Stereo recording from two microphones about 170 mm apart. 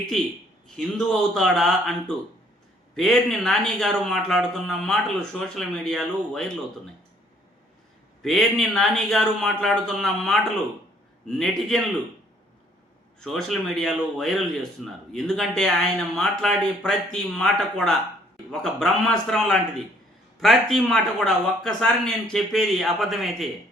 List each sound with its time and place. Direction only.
0.8 s a man's voice: centre (ahead or behind)
8.2 s a man's voice: centre (ahead or behind)
13.1 s a man's voice: centre (ahead or behind)